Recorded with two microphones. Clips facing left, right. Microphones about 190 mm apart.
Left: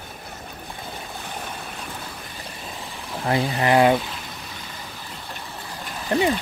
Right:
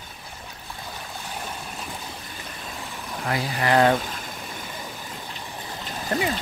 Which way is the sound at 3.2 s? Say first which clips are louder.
Left 4 dB; 25° left (ahead or behind).